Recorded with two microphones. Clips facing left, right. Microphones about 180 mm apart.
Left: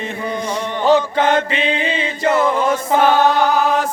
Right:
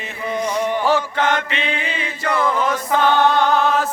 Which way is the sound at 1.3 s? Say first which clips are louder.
Left 6 dB; 30° left (ahead or behind).